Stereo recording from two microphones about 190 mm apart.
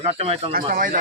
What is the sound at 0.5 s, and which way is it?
Speech, 50° right (ahead or behind).